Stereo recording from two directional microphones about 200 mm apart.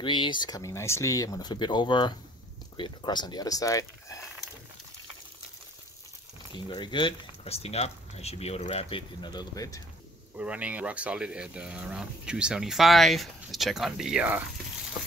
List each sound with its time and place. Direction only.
0.0 s speech: 25° left (ahead or behind)
6.5 s speech: 25° left (ahead or behind)
10.3 s speech: 5° right (ahead or behind)